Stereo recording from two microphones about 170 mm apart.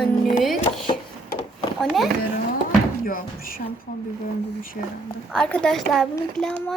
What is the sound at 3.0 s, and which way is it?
Speech, 55° left (ahead or behind).